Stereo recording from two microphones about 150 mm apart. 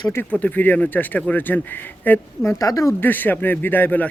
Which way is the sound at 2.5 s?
25° left (ahead or behind).